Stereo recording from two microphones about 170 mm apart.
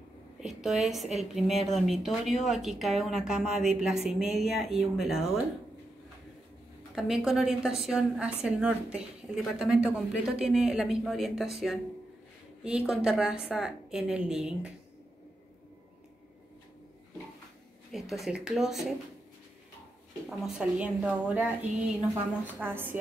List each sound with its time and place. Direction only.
0.4 s a woman's voice: centre (ahead or behind)
7.0 s a woman's voice: 5° right (ahead or behind)
17.9 s a woman's voice: centre (ahead or behind)
20.2 s a woman's voice: 5° right (ahead or behind)